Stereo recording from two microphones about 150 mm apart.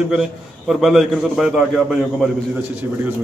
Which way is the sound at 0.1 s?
Centre (ahead or behind).